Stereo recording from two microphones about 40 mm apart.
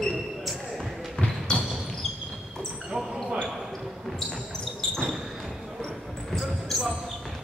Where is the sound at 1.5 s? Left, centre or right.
Centre.